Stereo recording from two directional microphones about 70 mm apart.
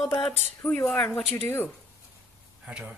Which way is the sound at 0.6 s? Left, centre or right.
Centre.